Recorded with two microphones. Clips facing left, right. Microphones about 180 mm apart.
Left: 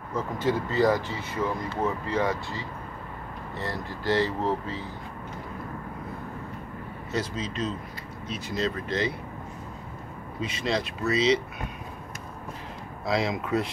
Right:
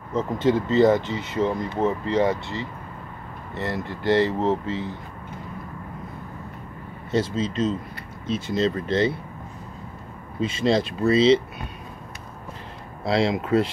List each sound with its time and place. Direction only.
0.1 s speech: 25° right (ahead or behind)
4.1 s speech: 60° right (ahead or behind)
4.6 s speech: 70° right (ahead or behind)
7.1 s speech: 25° right (ahead or behind)
10.4 s speech: 30° right (ahead or behind)
13.0 s speech: 30° right (ahead or behind)